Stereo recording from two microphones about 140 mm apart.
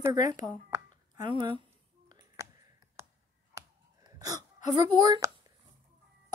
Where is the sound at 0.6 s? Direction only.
25° right (ahead or behind).